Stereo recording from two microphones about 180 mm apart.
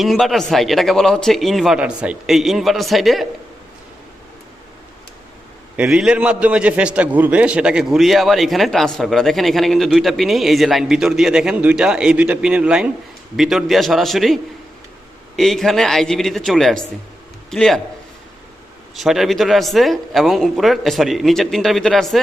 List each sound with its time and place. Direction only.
0.0 s a man's voice: centre (ahead or behind)
5.7 s a man's voice: 5° right (ahead or behind)
15.4 s a man's voice: centre (ahead or behind)
18.9 s a man's voice: centre (ahead or behind)